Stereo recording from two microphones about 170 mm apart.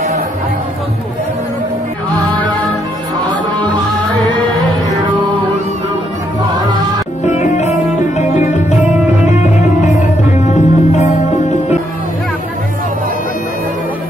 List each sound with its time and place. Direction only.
7.2 s music: 45° left (ahead or behind)
9.8 s music: 45° left (ahead or behind)